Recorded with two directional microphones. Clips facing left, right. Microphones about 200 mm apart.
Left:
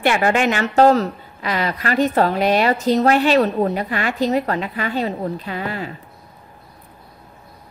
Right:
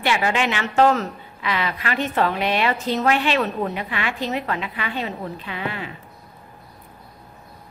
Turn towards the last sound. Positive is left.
turn(degrees=40)  # may be behind; listen again after turning